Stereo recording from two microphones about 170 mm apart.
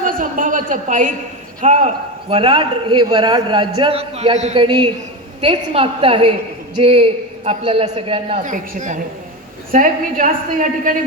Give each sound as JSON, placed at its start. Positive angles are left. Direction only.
{"t": 0.0, "sound": "a woman's voice", "side_deg": -55}
{"t": 8.4, "sound": "a woman's voice", "side_deg": -50}